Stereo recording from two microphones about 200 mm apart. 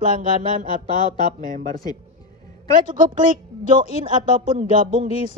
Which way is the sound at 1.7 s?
20° left (ahead or behind).